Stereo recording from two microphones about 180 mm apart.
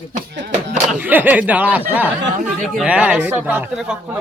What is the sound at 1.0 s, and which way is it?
Speech, 10° right (ahead or behind).